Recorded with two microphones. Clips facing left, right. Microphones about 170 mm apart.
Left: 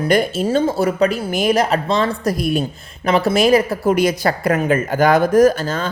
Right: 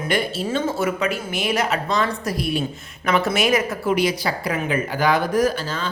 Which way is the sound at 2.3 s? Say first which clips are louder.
Left 4 dB; 45° left (ahead or behind).